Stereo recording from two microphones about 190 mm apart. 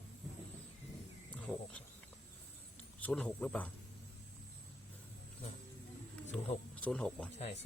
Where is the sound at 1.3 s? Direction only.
5° left (ahead or behind).